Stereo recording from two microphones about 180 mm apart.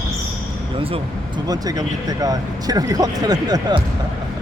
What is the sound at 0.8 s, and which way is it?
Speech, 30° right (ahead or behind).